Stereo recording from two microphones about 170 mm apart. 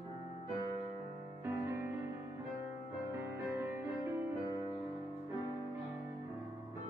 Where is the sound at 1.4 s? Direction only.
15° right (ahead or behind).